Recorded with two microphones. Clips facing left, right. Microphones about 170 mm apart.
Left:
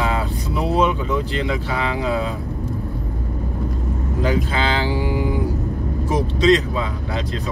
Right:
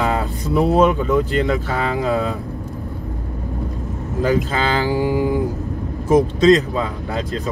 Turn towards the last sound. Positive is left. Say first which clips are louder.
# right 2 dB
turn(degrees=-40)  # may be behind; listen again after turning